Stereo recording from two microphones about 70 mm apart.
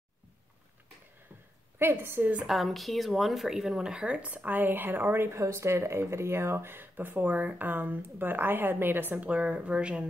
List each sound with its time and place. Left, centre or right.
1.8 s a woman's voice: right
2.4 s speech: centre